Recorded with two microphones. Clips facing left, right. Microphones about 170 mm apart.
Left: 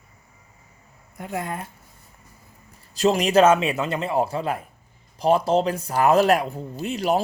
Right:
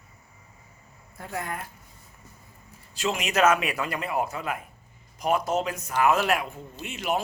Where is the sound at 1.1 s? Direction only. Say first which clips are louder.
Left 4 dB; 20° left (ahead or behind).